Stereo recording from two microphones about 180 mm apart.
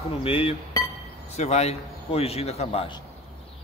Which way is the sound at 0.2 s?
30° left (ahead or behind).